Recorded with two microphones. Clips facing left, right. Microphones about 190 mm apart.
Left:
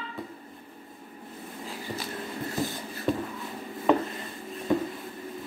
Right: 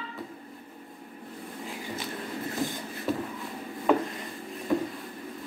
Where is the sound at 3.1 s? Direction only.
5° right (ahead or behind).